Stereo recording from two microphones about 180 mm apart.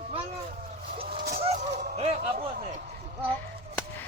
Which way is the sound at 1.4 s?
35° right (ahead or behind).